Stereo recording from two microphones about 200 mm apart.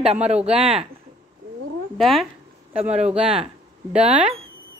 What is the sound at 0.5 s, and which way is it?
Speech, 30° right (ahead or behind).